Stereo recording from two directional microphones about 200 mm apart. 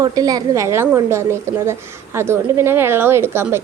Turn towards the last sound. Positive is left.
turn(degrees=-10)  # may be behind; listen again after turning